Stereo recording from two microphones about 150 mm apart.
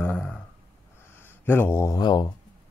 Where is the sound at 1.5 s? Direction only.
15° left (ahead or behind).